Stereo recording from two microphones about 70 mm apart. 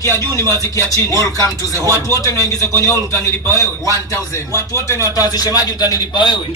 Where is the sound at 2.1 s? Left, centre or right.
Left.